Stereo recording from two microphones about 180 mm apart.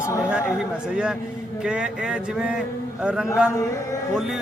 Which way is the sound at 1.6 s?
5° right (ahead or behind).